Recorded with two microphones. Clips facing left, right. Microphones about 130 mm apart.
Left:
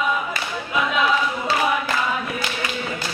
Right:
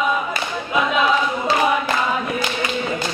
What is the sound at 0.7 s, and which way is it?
A capella, 25° right (ahead or behind).